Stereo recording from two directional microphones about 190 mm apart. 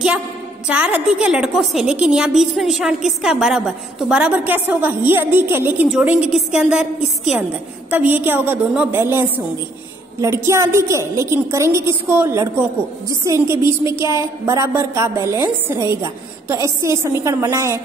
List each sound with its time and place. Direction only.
0.7 s a woman's voice: 5° right (ahead or behind)